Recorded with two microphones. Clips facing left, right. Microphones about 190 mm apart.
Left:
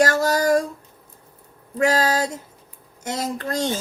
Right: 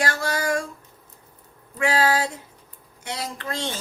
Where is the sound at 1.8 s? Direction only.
40° left (ahead or behind).